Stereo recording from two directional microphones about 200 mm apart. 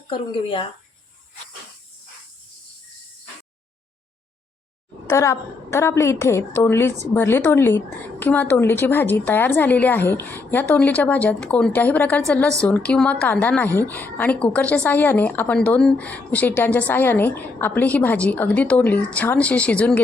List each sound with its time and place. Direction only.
0.1 s speech: 25° left (ahead or behind)
5.0 s a woman's voice: 15° left (ahead or behind)